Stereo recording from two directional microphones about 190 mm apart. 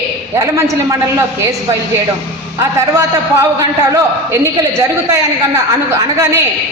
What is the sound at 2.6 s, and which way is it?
A man's voice, 15° right (ahead or behind).